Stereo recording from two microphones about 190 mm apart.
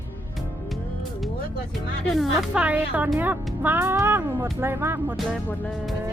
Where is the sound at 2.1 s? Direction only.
Centre (ahead or behind).